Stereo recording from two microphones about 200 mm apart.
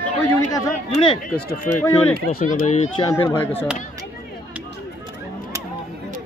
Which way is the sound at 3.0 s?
10° left (ahead or behind).